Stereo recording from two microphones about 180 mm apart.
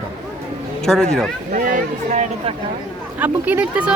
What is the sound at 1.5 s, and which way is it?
Speech, 50° right (ahead or behind).